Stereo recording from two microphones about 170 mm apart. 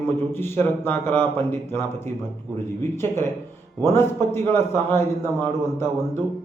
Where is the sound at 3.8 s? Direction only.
15° left (ahead or behind).